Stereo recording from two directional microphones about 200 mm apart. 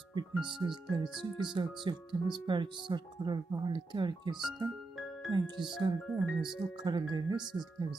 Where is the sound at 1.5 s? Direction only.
25° right (ahead or behind).